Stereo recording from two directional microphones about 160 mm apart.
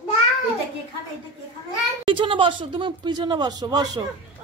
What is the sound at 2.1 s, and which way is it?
Speech, 30° right (ahead or behind).